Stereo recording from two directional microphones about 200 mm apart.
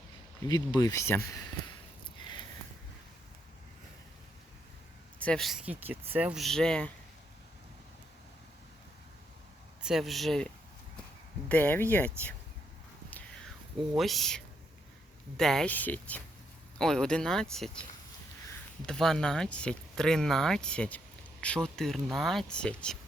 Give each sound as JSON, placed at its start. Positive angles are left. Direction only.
{"t": 0.4, "sound": "speech", "side_deg": 20}
{"t": 5.2, "sound": "speech", "side_deg": 5}
{"t": 9.8, "sound": "speech", "side_deg": 0}
{"t": 13.9, "sound": "speech", "side_deg": 0}
{"t": 18.9, "sound": "speech", "side_deg": 0}